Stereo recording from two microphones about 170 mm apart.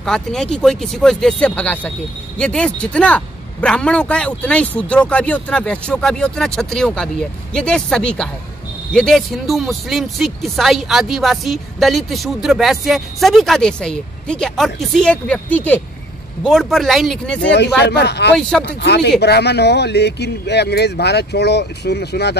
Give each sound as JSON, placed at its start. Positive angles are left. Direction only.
{"t": 0.0, "sound": "speech", "side_deg": 5}
{"t": 17.5, "sound": "speech", "side_deg": 80}